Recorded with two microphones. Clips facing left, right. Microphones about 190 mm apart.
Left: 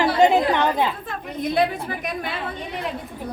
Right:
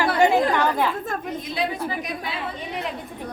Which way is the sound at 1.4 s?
55° left (ahead or behind).